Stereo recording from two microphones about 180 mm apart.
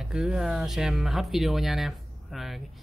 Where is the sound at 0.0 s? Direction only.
5° right (ahead or behind).